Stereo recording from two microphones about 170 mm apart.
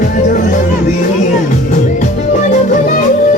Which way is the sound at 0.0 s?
50° left (ahead or behind).